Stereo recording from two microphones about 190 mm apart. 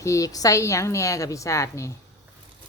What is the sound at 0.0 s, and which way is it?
Speech, 15° left (ahead or behind).